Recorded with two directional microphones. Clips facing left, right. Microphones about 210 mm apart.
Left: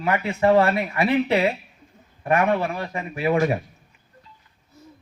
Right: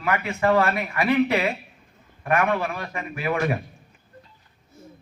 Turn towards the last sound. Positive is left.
turn(degrees=25)  # may be behind; listen again after turning